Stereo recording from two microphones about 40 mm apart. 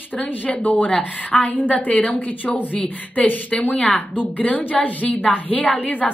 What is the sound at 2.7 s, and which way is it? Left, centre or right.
Speech, left.